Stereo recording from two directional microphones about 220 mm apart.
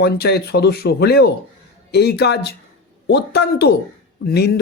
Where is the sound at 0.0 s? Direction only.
45° left (ahead or behind).